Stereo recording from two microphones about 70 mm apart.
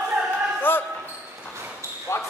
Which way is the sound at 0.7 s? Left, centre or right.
Left.